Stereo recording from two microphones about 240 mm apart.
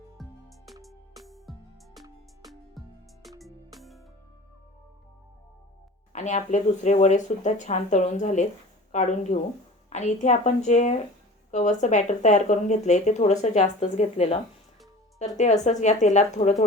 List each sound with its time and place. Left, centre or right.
0.2 s music: centre
6.1 s speech: left